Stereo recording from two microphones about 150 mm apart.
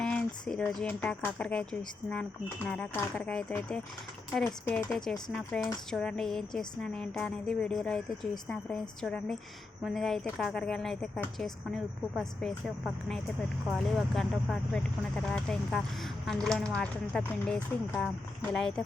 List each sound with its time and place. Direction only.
0.0 s speech: 5° left (ahead or behind)
2.6 s speech: 10° left (ahead or behind)
4.4 s speech: 15° left (ahead or behind)
4.9 s a sound: 5° left (ahead or behind)